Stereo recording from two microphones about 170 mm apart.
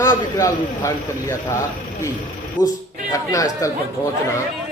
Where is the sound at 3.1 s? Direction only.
20° left (ahead or behind).